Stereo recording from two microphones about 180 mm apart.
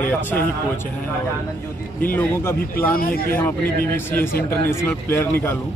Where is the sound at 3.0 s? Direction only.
55° left (ahead or behind).